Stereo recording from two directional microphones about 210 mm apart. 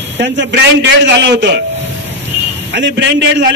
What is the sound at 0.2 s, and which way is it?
A man's voice, 55° right (ahead or behind).